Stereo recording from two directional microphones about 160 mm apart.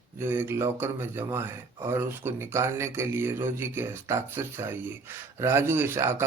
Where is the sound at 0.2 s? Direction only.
15° right (ahead or behind).